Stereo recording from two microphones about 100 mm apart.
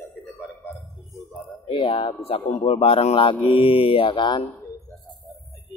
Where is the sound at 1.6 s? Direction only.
60° left (ahead or behind).